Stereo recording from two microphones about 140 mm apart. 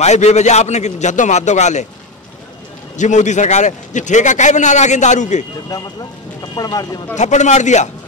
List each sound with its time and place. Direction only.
0.0 s a man's voice: 55° left (ahead or behind)
3.0 s a man's voice: 60° left (ahead or behind)
6.5 s speech: 25° left (ahead or behind)
7.2 s a man's voice: 60° left (ahead or behind)